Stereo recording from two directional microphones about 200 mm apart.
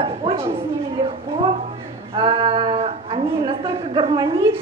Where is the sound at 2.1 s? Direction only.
25° right (ahead or behind).